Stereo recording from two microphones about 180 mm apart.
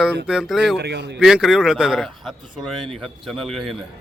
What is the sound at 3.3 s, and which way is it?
Speech, centre (ahead or behind).